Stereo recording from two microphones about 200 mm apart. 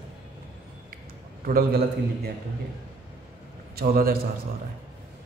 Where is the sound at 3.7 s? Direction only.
50° right (ahead or behind).